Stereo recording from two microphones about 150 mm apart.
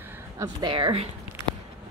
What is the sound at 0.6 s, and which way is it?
Speech, 35° right (ahead or behind).